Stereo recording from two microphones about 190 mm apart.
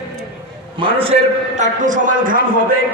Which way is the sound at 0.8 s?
30° right (ahead or behind).